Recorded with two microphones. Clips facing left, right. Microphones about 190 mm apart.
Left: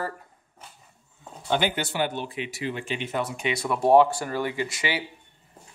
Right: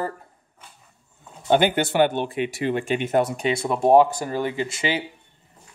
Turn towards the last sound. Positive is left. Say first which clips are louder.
# right 4 dB
turn(degrees=-25)  # may be behind; listen again after turning